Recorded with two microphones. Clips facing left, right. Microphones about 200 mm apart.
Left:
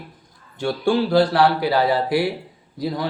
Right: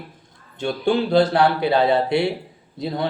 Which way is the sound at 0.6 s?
20° right (ahead or behind).